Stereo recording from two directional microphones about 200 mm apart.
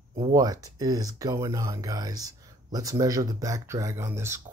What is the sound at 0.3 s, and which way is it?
Speech, 15° right (ahead or behind).